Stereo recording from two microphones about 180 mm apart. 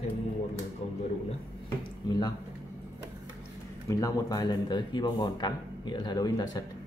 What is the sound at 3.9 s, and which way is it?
Speech, 20° left (ahead or behind).